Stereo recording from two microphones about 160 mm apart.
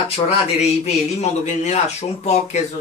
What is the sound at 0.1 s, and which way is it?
A man's voice, 45° left (ahead or behind).